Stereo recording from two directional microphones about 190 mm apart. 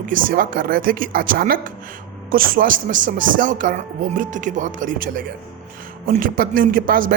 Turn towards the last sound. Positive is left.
turn(degrees=-50)  # may be behind; listen again after turning